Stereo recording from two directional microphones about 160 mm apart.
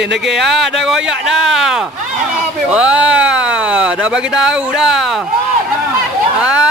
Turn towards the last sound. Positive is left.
turn(degrees=-5)  # may be behind; listen again after turning